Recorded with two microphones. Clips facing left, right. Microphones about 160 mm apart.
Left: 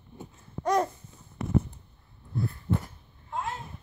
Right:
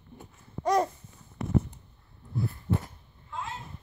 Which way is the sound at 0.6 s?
Centre (ahead or behind).